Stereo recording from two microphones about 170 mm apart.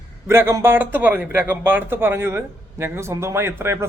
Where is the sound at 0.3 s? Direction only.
15° right (ahead or behind).